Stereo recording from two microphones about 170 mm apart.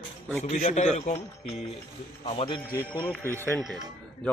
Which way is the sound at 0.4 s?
40° left (ahead or behind).